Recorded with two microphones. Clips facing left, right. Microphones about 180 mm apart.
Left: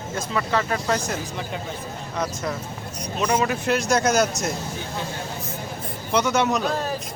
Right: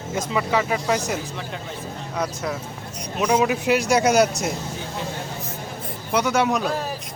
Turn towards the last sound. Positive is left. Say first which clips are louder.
# even
turn(degrees=-5)  # may be behind; listen again after turning